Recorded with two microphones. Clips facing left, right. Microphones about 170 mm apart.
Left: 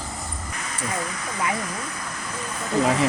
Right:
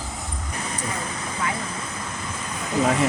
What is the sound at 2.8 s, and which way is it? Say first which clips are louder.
Speech: even; centre (ahead or behind).